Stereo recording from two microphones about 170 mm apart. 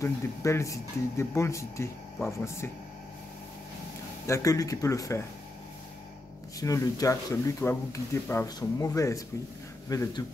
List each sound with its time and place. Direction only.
0.0 s speech: 15° left (ahead or behind)
4.3 s speech: 20° left (ahead or behind)
6.6 s speech: 20° left (ahead or behind)